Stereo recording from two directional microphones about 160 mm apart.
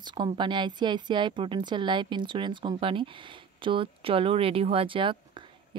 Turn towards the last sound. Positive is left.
turn(degrees=-30)  # may be behind; listen again after turning